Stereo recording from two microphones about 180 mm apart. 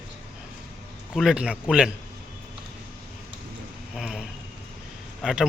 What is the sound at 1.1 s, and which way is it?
Speech, centre (ahead or behind).